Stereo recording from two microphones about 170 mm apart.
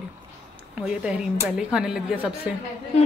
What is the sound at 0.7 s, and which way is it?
Speech, 5° right (ahead or behind).